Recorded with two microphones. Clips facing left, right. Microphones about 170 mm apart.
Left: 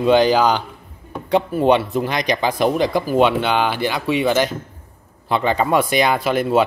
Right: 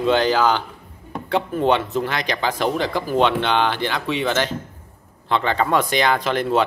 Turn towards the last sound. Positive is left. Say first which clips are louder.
# left 3 dB
turn(degrees=10)  # may be behind; listen again after turning